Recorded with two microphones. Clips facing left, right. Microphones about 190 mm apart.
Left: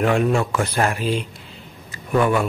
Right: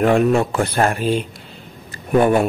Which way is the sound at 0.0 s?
40° right (ahead or behind).